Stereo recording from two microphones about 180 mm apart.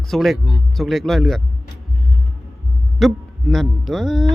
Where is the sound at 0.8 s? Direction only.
Centre (ahead or behind).